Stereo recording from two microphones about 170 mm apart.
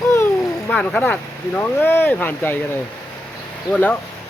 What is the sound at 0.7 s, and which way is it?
Speech, 5° left (ahead or behind).